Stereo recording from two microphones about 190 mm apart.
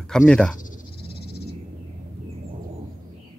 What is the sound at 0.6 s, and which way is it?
Frog, 45° left (ahead or behind).